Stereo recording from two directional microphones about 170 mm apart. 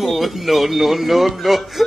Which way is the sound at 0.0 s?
Centre (ahead or behind).